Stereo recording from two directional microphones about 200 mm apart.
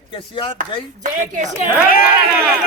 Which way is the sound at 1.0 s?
40° right (ahead or behind).